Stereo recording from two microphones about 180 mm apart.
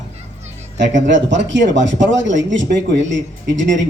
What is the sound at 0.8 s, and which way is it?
A man's voice, 85° right.